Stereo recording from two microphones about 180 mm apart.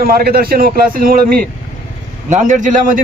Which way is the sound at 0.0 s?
60° right (ahead or behind).